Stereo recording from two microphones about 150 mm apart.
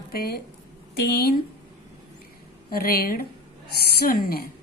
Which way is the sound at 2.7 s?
85° left.